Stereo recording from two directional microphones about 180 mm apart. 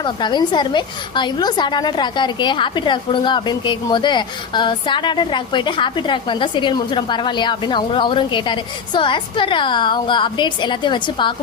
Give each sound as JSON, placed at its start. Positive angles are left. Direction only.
{"t": 0.0, "sound": "a woman's voice", "side_deg": 25}